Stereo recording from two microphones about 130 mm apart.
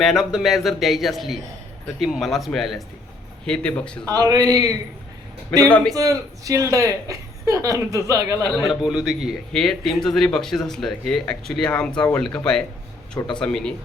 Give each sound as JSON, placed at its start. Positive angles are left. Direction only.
{"t": 0.0, "sound": "speech", "side_deg": 0}
{"t": 4.0, "sound": "speech", "side_deg": -30}
{"t": 5.5, "sound": "speech", "side_deg": 10}
{"t": 5.9, "sound": "speech", "side_deg": -25}
{"t": 8.7, "sound": "speech", "side_deg": -5}
{"t": 13.1, "sound": "speech", "side_deg": 35}
{"t": 13.4, "sound": "speech", "side_deg": 5}